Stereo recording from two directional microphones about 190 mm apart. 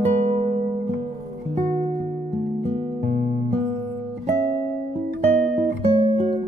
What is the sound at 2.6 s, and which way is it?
Music, 35° right (ahead or behind).